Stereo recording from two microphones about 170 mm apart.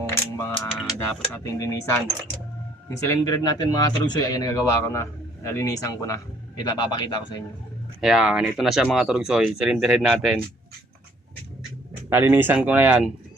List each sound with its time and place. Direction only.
0.0 s a sound: 15° left (ahead or behind)
1.5 s speech: 15° left (ahead or behind)
3.0 s speech: 20° left (ahead or behind)
8.0 s speech: 5° right (ahead or behind)
12.1 s speech: 10° right (ahead or behind)